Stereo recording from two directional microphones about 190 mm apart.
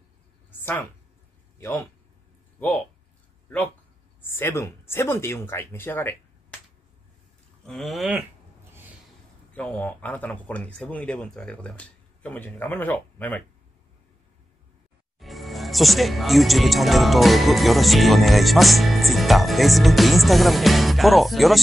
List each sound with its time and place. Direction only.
0.5 s a sound: 10° left (ahead or behind)
1.6 s speech: 15° left (ahead or behind)
4.2 s speech: 10° left (ahead or behind)
7.6 s speech: centre (ahead or behind)
9.6 s speech: 10° left (ahead or behind)
15.1 s speech: centre (ahead or behind)